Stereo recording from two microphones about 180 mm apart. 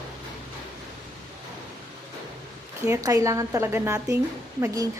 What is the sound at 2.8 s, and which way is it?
Speech, 15° right (ahead or behind).